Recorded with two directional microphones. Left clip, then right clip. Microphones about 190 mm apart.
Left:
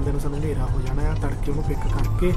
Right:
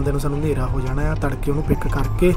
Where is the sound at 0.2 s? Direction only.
20° right (ahead or behind).